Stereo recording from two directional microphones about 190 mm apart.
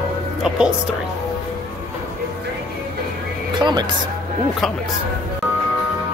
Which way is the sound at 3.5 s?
25° right (ahead or behind).